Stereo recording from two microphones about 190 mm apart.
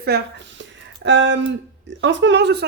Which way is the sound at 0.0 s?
65° right (ahead or behind).